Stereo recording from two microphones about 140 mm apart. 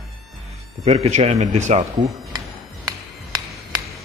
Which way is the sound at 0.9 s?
45° right (ahead or behind).